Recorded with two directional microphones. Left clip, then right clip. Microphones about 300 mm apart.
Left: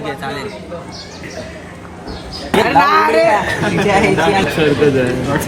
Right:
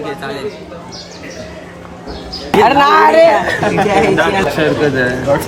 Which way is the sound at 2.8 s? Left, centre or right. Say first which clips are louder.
Right 4 dB; right.